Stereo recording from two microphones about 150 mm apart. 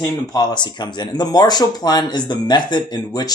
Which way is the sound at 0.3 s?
25° left (ahead or behind).